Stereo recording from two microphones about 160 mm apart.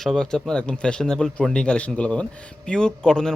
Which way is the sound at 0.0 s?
5° left (ahead or behind).